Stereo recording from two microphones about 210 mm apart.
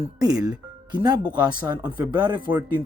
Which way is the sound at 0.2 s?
15° right (ahead or behind).